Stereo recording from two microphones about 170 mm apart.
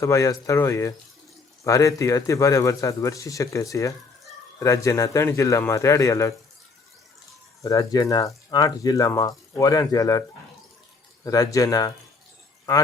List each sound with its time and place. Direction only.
0.0 s a man's voice: 20° left (ahead or behind)
7.6 s speech: 20° left (ahead or behind)